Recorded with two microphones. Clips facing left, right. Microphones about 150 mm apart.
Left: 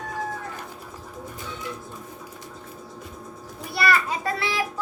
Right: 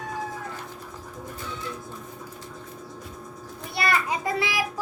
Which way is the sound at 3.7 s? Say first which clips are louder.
Left 2 dB; 20° right (ahead or behind).